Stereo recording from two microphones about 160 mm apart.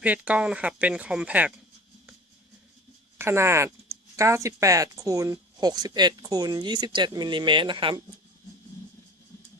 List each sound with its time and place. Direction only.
0.0 s speech: 10° right (ahead or behind)
3.2 s speech: 15° right (ahead or behind); by 8.0 s 30° right (ahead or behind)